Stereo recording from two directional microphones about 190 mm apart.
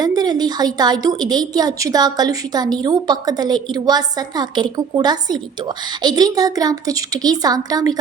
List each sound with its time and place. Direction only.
0.0 s a woman's voice: 20° right (ahead or behind)